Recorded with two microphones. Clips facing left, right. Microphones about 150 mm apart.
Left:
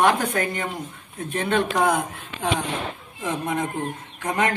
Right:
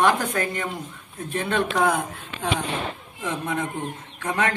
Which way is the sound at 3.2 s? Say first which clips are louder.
Left 2 dB; 15° left (ahead or behind).